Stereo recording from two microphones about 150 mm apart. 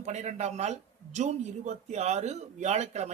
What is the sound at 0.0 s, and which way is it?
Speech, 50° right (ahead or behind).